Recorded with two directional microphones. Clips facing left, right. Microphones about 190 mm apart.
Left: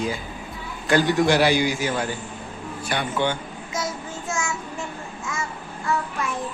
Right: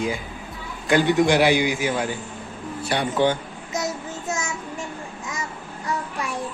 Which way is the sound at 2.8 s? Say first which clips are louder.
Right 4 dB; 30° right (ahead or behind).